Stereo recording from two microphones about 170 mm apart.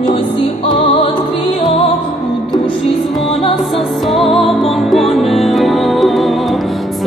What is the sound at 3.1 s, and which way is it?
Music, centre (ahead or behind).